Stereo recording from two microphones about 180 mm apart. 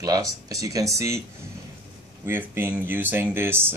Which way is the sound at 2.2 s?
15° right (ahead or behind).